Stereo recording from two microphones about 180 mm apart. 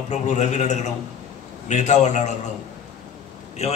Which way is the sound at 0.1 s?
40° left (ahead or behind).